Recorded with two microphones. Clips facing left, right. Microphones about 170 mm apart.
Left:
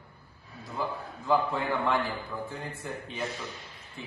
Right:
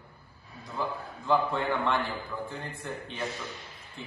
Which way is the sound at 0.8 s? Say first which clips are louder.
Even; 5° left (ahead or behind).